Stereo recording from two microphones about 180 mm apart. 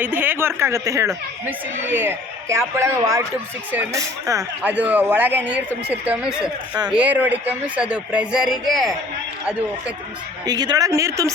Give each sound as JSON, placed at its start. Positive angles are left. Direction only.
{"t": 0.0, "sound": "speech", "side_deg": -10}
{"t": 10.4, "sound": "a woman's voice", "side_deg": -20}